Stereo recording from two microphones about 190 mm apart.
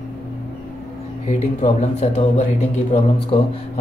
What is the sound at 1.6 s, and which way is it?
Speech, 35° left (ahead or behind).